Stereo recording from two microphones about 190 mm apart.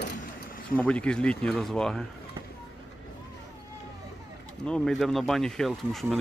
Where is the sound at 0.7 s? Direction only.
5° left (ahead or behind).